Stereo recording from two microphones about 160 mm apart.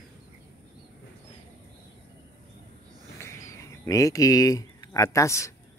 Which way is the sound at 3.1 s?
15° left (ahead or behind).